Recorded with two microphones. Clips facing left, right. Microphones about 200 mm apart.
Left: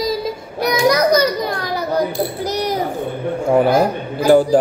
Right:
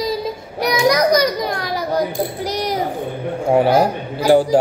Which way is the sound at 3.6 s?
50° left (ahead or behind).